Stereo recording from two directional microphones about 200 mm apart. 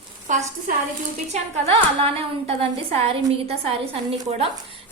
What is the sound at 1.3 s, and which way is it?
A woman's voice, 30° right (ahead or behind).